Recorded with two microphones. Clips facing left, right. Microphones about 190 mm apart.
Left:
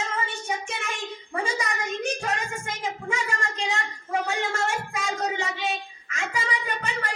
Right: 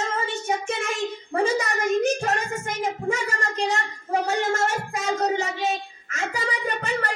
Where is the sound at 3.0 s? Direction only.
40° right (ahead or behind).